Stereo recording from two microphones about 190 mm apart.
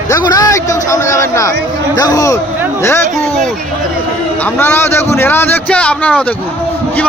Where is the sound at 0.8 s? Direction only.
15° left (ahead or behind).